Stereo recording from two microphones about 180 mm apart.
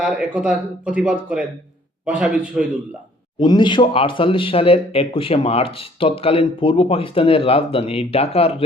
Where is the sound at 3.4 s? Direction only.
25° left (ahead or behind).